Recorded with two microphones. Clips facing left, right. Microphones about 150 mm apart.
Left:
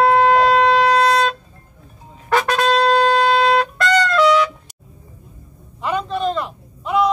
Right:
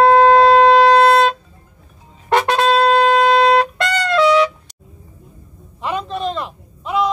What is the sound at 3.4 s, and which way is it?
Trumpet, 25° right (ahead or behind).